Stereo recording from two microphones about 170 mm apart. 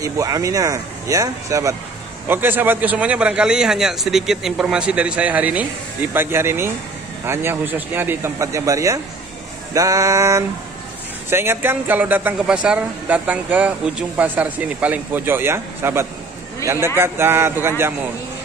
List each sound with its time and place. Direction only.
0.0 s a man's voice: 20° right (ahead or behind)